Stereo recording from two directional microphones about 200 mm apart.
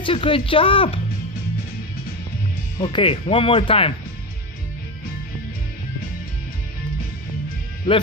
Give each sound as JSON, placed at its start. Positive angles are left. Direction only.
{"t": 0.0, "sound": "speech", "side_deg": 25}
{"t": 2.8, "sound": "speech", "side_deg": 25}
{"t": 7.9, "sound": "speech", "side_deg": 25}